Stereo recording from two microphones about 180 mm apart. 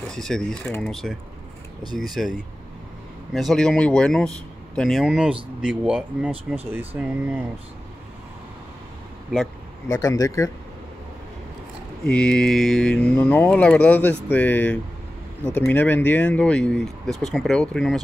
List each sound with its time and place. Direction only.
0.1 s speech: 5° left (ahead or behind)
3.3 s speech: centre (ahead or behind)
9.3 s speech: centre (ahead or behind)
9.8 s speech: 15° left (ahead or behind)
12.0 s speech: 5° left (ahead or behind)